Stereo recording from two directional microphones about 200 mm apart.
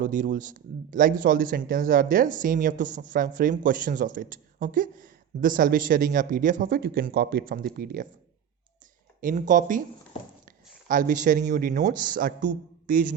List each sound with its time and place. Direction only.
0.0 s a man's voice: 40° right (ahead or behind)
9.2 s a man's voice: 40° right (ahead or behind)
10.8 s a man's voice: 40° right (ahead or behind)